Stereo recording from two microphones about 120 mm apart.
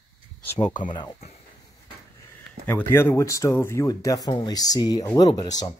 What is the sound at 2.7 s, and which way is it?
Speech, 20° left (ahead or behind).